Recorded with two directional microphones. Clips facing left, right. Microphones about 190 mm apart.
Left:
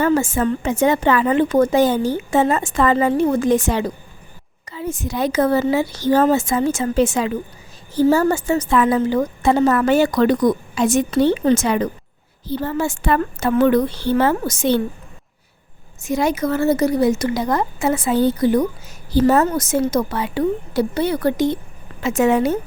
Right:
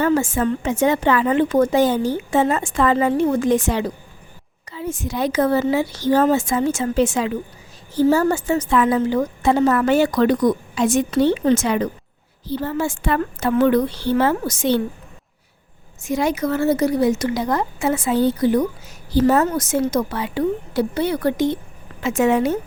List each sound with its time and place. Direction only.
0.0 s a woman's voice: 40° left (ahead or behind)
16.0 s speech: 45° left (ahead or behind)